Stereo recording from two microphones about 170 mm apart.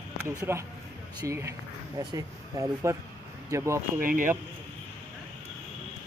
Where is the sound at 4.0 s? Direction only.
55° right (ahead or behind).